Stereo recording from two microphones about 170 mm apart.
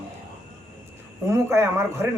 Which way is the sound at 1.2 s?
15° right (ahead or behind).